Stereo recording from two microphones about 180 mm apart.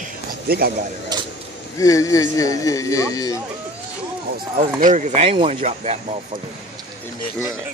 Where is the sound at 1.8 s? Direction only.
20° left (ahead or behind).